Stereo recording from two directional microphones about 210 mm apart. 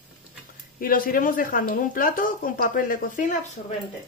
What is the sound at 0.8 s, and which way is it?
Speech, 45° left (ahead or behind).